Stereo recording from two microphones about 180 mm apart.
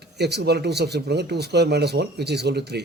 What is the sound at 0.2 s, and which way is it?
Speech, 65° right (ahead or behind).